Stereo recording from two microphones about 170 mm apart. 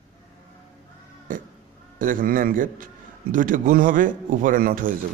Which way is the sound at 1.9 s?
55° right (ahead or behind).